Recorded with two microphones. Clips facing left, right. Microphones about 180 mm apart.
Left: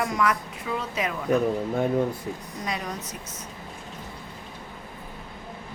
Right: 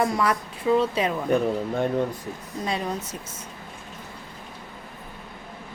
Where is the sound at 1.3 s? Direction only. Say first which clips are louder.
Left 2 dB; 5° left (ahead or behind).